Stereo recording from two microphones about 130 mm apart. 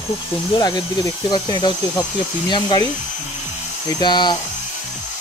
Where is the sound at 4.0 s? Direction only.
35° left (ahead or behind).